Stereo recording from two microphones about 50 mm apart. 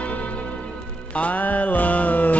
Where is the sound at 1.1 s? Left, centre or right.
Left.